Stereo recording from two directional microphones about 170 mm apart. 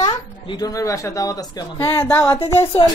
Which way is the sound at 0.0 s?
20° left (ahead or behind).